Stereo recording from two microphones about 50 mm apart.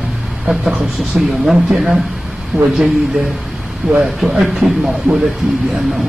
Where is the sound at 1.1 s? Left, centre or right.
Centre.